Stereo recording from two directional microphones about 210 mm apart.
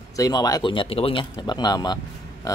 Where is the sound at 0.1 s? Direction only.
20° left (ahead or behind).